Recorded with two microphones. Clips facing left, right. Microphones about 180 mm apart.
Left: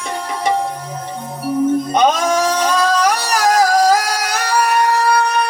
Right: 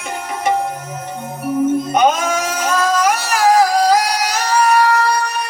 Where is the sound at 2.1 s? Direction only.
35° left (ahead or behind); by 4.5 s 55° left (ahead or behind).